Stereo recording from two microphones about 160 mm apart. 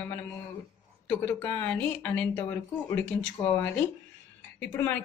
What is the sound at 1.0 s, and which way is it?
Speech, 10° left (ahead or behind).